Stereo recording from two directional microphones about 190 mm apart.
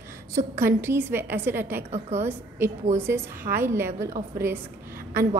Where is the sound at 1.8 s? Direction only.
35° right (ahead or behind).